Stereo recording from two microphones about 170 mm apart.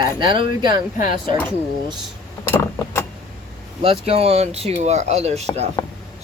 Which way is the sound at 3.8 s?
35° right (ahead or behind).